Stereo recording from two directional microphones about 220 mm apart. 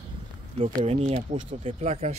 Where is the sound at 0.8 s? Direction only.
25° right (ahead or behind).